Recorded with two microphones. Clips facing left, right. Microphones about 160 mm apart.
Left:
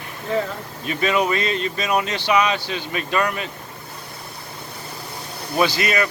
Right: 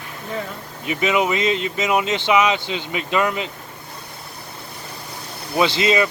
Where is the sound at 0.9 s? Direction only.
15° right (ahead or behind).